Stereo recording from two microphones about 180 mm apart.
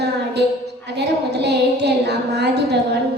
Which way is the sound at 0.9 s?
65° right (ahead or behind).